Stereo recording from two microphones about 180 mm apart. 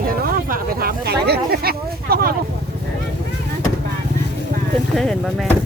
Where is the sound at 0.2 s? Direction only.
50° right (ahead or behind).